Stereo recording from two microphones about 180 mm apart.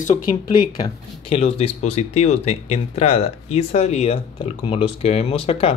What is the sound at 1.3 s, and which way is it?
Speech, 35° left (ahead or behind).